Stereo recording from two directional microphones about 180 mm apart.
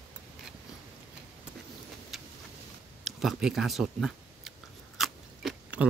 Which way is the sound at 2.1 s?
Centre (ahead or behind).